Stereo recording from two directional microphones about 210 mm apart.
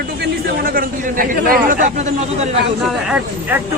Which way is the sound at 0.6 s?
45° right (ahead or behind).